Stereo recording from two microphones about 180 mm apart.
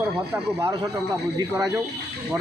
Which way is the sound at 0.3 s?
15° right (ahead or behind).